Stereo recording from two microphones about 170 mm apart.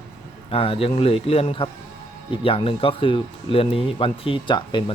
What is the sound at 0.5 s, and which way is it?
Speech, 35° left (ahead or behind).